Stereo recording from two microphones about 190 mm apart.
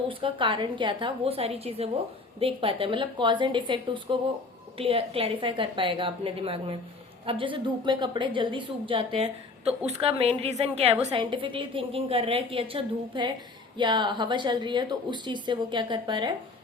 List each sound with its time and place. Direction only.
0.1 s a woman's voice: 25° right (ahead or behind)